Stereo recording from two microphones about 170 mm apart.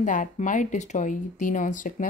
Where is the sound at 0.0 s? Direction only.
50° left (ahead or behind).